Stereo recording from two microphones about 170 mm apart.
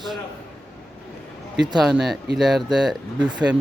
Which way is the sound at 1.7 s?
Centre (ahead or behind).